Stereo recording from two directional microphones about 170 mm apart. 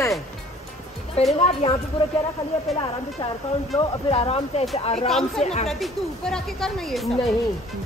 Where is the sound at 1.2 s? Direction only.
40° left (ahead or behind).